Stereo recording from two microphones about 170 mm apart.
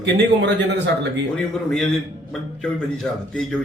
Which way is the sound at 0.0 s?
90° right.